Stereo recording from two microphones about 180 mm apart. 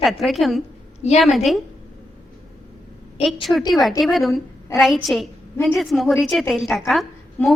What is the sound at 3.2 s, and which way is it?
A woman's voice, centre (ahead or behind).